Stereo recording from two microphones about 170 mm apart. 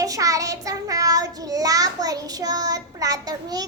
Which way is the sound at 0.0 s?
20° right (ahead or behind).